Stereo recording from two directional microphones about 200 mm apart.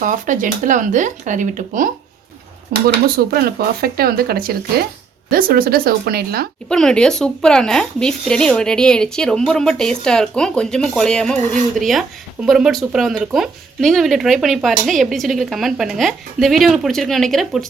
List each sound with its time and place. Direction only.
0.0 s speech: 40° right (ahead or behind)
6.7 s speech: 5° left (ahead or behind)